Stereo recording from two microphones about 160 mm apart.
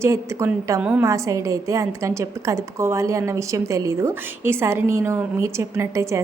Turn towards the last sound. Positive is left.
turn(degrees=-20)  # may be behind; listen again after turning